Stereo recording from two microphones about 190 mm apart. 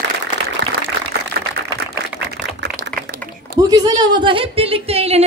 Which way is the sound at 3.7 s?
20° right (ahead or behind).